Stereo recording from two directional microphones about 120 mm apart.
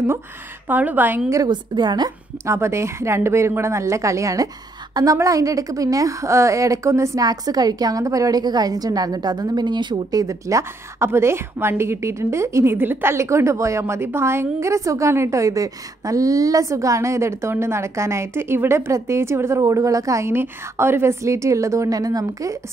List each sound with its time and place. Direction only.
0.7 s a woman's voice: 15° right (ahead or behind)
1.3 s a woman's voice: 35° right (ahead or behind)
2.4 s a woman's voice: 25° right (ahead or behind); by 10.2 s 40° right (ahead or behind)
10.2 s a woman's voice: 25° right (ahead or behind)